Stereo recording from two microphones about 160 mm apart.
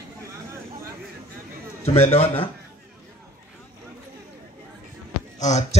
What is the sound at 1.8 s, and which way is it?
Speech, 40° left (ahead or behind).